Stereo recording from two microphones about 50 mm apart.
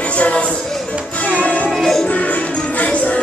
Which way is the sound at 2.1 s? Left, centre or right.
Left.